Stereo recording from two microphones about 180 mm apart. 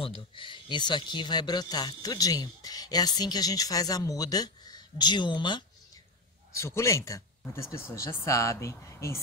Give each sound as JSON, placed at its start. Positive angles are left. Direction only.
{"t": 0.0, "sound": "speech", "side_deg": 30}